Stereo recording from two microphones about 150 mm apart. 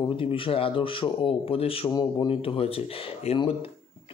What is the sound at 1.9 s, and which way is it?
Speech, 30° left (ahead or behind).